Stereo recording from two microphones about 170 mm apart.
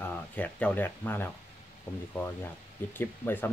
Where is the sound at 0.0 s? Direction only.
10° left (ahead or behind).